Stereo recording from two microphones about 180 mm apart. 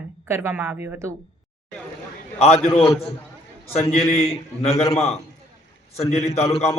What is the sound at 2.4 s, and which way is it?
Speech, 35° left (ahead or behind).